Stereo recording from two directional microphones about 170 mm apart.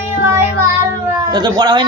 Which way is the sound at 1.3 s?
25° right (ahead or behind).